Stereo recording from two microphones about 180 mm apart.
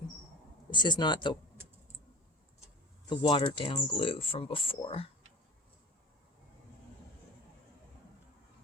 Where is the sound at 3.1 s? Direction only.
25° left (ahead or behind).